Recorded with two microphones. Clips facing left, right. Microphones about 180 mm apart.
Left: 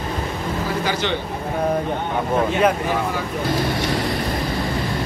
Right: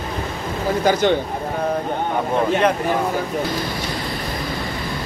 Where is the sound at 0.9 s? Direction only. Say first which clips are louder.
Right 9 dB; 45° right (ahead or behind).